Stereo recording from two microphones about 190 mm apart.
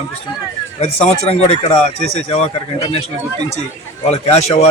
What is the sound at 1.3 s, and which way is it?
A man's voice, 35° left (ahead or behind).